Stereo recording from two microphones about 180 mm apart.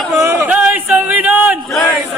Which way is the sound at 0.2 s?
15° right (ahead or behind).